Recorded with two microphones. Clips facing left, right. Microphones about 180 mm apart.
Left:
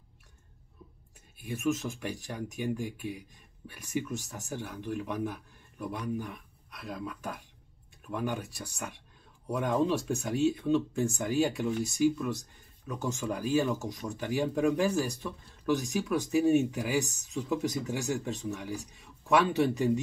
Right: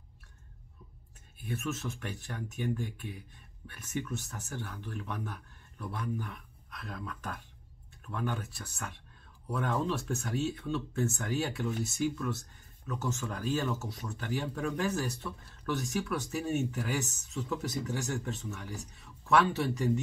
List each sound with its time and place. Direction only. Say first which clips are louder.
1.4 s speech: left 5 dB; 10° left (ahead or behind)